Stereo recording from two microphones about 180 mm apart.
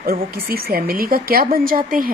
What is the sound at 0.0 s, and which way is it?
A woman's voice, 60° right (ahead or behind).